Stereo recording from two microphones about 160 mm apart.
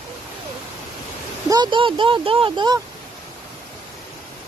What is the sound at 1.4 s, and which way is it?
Speech, 25° right (ahead or behind).